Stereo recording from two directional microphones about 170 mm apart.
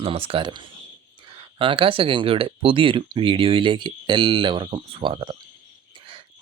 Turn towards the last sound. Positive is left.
turn(degrees=-30)  # may be behind; listen again after turning